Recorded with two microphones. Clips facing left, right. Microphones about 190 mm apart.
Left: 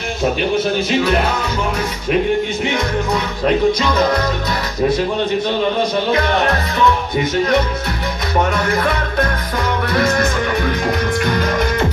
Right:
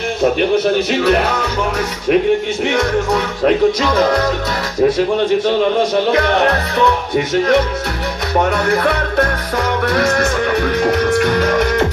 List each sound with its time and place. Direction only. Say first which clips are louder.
2.7 s music: right 3 dB; 75° right (ahead or behind)
6.1 s music: right 3 dB; 70° right (ahead or behind)
8.6 s music: right 3 dB; 65° right (ahead or behind)